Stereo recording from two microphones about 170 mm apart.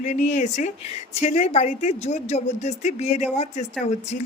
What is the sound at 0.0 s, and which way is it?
Speech, 45° left (ahead or behind).